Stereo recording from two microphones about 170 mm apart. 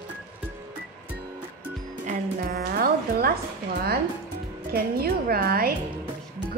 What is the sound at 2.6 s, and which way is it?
Music, 60° right (ahead or behind).